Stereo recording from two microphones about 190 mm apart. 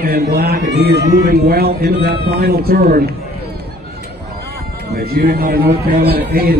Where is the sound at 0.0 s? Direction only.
55° right (ahead or behind).